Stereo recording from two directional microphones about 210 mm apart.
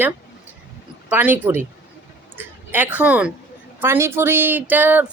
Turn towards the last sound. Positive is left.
turn(degrees=-10)  # may be behind; listen again after turning